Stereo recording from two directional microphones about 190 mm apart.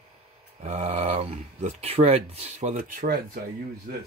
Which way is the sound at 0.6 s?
35° right (ahead or behind).